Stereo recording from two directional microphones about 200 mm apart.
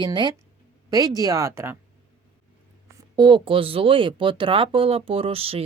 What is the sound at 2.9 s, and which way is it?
Speech, 20° right (ahead or behind).